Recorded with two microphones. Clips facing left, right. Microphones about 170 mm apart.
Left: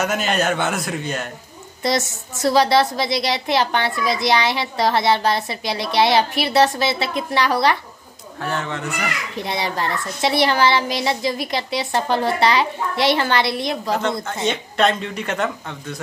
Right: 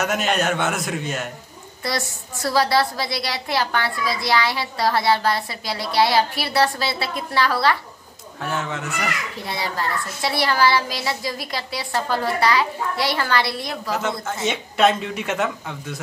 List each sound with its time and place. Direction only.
0.0 s speech: centre (ahead or behind)
1.8 s a woman's voice: 20° left (ahead or behind)
8.4 s speech: centre (ahead or behind)
9.4 s a woman's voice: 20° left (ahead or behind)
14.0 s speech: 5° right (ahead or behind)